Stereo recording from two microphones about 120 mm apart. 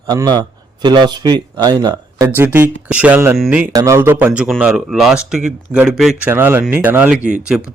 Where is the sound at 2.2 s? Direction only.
15° right (ahead or behind).